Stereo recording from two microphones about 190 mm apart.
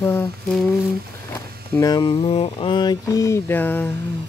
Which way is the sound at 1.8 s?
20° left (ahead or behind).